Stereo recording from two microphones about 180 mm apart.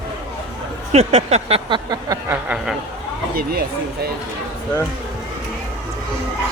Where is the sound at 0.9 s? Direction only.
35° right (ahead or behind); by 2.3 s 20° right (ahead or behind).